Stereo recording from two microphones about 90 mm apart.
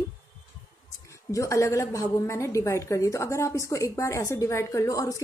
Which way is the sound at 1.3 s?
35° left (ahead or behind).